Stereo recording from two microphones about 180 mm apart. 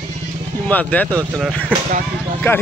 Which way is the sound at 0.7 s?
10° left (ahead or behind).